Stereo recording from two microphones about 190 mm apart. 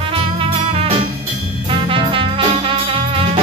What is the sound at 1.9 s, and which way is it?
Music, 30° right (ahead or behind).